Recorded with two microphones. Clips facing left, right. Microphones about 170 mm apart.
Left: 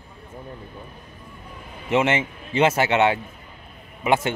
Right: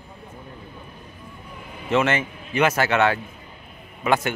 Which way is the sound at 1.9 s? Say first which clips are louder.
Even; 20° left (ahead or behind).